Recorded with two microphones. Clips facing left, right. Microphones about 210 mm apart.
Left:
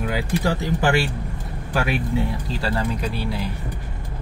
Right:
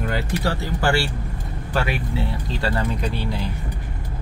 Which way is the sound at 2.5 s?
5° left (ahead or behind).